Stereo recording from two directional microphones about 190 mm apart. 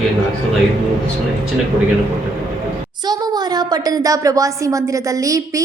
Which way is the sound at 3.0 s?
20° right (ahead or behind).